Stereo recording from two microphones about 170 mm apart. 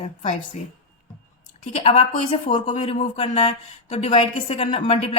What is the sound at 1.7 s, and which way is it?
A woman's voice, 40° left (ahead or behind).